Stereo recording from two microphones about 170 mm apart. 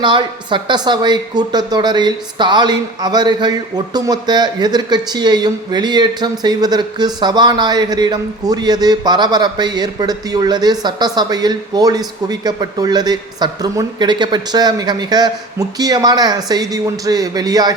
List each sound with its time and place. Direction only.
0.0 s a woman's voice: 30° right (ahead or behind)